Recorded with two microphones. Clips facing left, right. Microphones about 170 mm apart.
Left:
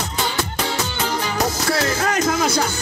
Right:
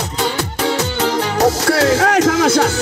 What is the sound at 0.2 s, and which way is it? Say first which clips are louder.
Music: right 5 dB; 65° right (ahead or behind).